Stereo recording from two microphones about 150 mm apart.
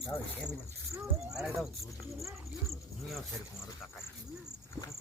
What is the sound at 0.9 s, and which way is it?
Speech, 20° right (ahead or behind).